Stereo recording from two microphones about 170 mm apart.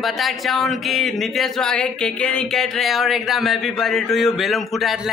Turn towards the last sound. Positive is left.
turn(degrees=0)  # may be behind; listen again after turning